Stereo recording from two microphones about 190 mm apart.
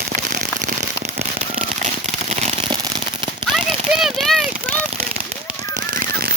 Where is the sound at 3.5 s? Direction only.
Centre (ahead or behind).